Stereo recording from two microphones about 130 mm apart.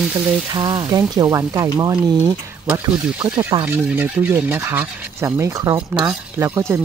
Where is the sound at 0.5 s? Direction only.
35° right (ahead or behind).